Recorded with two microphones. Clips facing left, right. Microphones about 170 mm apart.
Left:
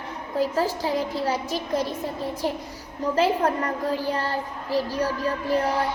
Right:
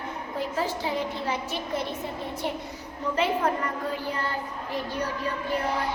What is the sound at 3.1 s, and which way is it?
A woman's voice, 35° left (ahead or behind).